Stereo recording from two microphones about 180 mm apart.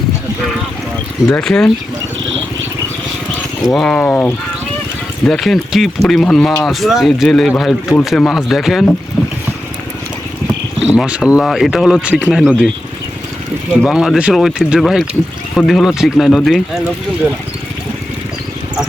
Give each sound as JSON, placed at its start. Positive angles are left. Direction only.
{"t": 1.3, "sound": "speech", "side_deg": 5}
{"t": 3.6, "sound": "speech", "side_deg": 0}
{"t": 10.9, "sound": "speech", "side_deg": -5}
{"t": 13.8, "sound": "speech", "side_deg": -5}